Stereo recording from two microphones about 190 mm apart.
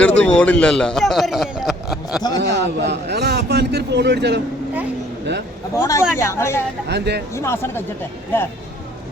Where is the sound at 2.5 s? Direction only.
65° right (ahead or behind).